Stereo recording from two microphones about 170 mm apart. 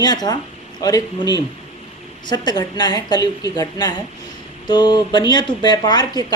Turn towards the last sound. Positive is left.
turn(degrees=25)  # may be behind; listen again after turning